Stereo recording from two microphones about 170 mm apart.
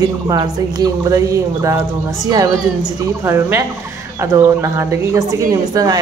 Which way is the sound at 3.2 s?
15° right (ahead or behind).